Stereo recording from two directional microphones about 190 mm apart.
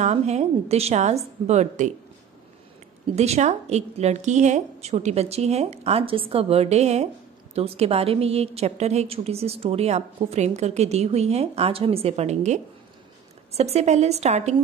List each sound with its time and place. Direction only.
0.0 s a woman's voice: 35° right (ahead or behind)
3.2 s a woman's voice: 35° right (ahead or behind)